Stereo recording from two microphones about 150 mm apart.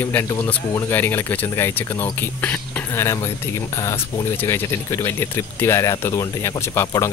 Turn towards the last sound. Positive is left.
turn(degrees=20)  # may be behind; listen again after turning